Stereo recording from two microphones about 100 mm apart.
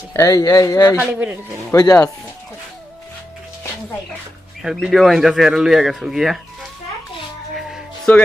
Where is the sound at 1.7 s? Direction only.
40° left (ahead or behind).